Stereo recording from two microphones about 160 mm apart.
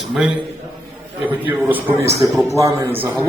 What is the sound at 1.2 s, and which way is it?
A man's voice, 10° right (ahead or behind).